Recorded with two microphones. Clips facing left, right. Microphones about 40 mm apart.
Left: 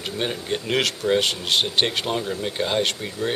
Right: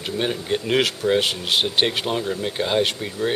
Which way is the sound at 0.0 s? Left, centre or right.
Centre.